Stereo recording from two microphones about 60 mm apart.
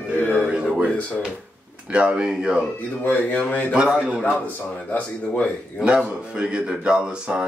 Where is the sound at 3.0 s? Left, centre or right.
Left.